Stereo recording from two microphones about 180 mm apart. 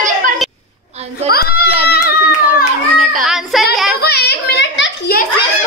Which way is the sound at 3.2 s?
Centre (ahead or behind).